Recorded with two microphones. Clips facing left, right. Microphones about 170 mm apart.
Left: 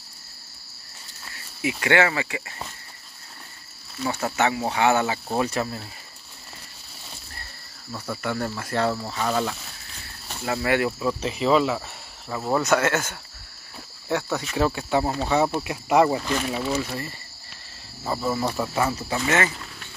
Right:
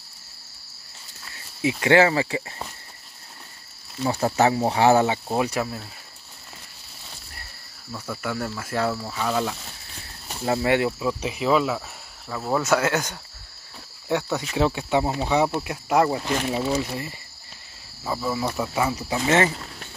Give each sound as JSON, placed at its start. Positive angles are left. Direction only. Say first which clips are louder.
{"t": 1.6, "sound": "speech", "louder": "right 4 dB", "side_deg": -25}
{"t": 4.1, "sound": "speech", "louder": "right 4 dB", "side_deg": -30}
{"t": 5.3, "sound": "speech", "louder": "right 1 dB", "side_deg": -10}
{"t": 8.2, "sound": "speech", "louder": "left 1 dB", "side_deg": -5}
{"t": 10.4, "sound": "speech", "louder": "right 2 dB", "side_deg": -25}
{"t": 10.9, "sound": "speech", "louder": "even", "side_deg": -5}
{"t": 15.6, "sound": "speech", "louder": "left 2 dB", "side_deg": 0}
{"t": 16.3, "sound": "speech", "louder": "right 1 dB", "side_deg": -20}
{"t": 18.0, "sound": "speech", "louder": "left 1 dB", "side_deg": 0}
{"t": 19.2, "sound": "speech", "louder": "right 4 dB", "side_deg": -30}